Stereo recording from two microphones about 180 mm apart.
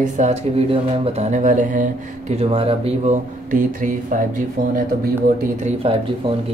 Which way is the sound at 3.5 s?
45° right (ahead or behind).